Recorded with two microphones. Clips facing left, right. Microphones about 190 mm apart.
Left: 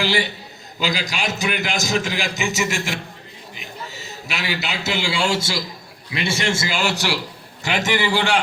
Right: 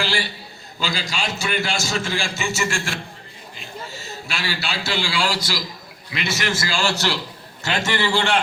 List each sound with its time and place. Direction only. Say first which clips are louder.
0.0 s a man's voice: left 4 dB; 20° left (ahead or behind)